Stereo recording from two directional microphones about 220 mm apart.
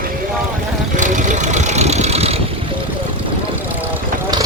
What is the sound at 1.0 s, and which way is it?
Vehicle, 35° right (ahead or behind).